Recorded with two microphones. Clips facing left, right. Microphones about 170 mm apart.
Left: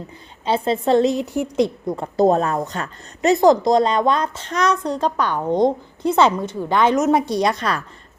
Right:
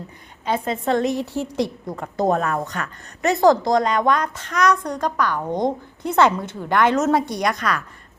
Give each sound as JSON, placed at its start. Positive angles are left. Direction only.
{"t": 0.4, "sound": "a woman's voice", "side_deg": 30}